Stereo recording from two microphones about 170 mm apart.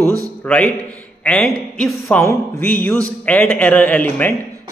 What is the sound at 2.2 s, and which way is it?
Speech, 15° left (ahead or behind).